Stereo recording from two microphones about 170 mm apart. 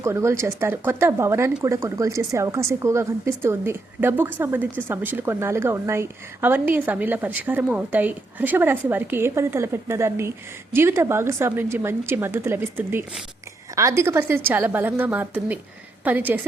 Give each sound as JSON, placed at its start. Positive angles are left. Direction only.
{"t": 0.0, "sound": "speech", "side_deg": -15}